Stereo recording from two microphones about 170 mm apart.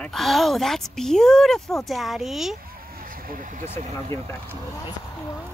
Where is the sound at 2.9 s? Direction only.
60° right (ahead or behind).